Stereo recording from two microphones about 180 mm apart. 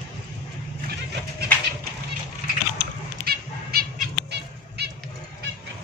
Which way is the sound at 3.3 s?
60° right (ahead or behind).